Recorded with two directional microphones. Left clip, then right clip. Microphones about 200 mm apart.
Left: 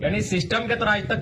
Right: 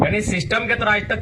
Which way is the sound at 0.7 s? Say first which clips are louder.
Right 3 dB; 25° right (ahead or behind).